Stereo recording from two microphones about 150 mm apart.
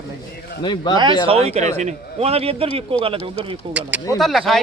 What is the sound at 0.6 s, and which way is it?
Speech, 30° left (ahead or behind).